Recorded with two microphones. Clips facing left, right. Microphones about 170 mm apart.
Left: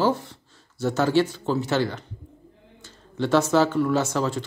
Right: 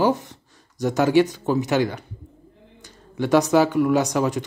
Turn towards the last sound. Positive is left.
turn(degrees=-15)  # may be behind; listen again after turning